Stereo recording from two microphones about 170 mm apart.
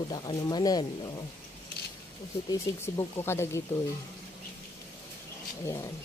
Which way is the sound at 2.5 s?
20° left (ahead or behind).